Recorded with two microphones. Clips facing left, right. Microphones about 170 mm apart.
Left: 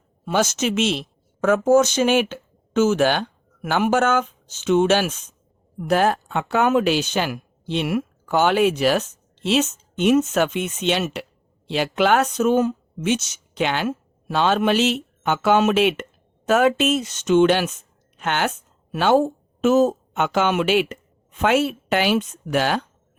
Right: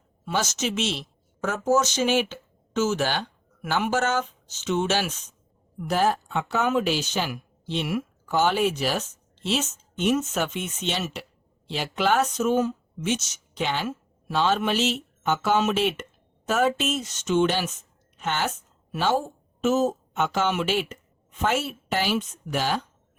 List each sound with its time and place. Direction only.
0.3 s a woman's voice: 55° left (ahead or behind)